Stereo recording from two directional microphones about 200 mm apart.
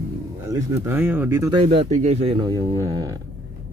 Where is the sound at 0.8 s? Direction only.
10° right (ahead or behind).